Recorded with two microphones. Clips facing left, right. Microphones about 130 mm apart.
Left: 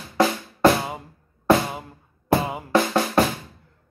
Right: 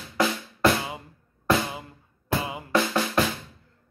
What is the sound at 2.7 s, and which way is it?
Drum, 30° left (ahead or behind).